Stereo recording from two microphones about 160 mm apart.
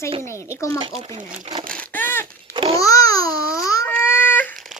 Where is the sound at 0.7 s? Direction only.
35° right (ahead or behind).